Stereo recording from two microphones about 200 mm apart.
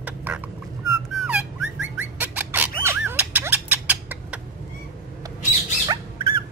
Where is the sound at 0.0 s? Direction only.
5° right (ahead or behind).